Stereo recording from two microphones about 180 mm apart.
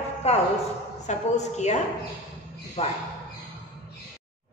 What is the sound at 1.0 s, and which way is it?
Speech, 40° left (ahead or behind).